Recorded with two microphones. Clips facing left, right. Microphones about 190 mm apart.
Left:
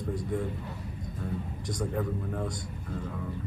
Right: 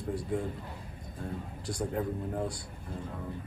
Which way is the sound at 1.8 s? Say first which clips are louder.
Left 1 dB; 25° right (ahead or behind).